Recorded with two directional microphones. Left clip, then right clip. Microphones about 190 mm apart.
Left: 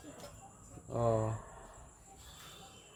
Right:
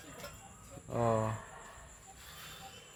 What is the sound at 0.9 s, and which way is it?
Speech, 25° right (ahead or behind).